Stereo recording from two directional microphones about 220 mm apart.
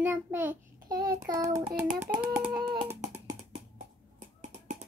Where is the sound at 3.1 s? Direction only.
15° right (ahead or behind).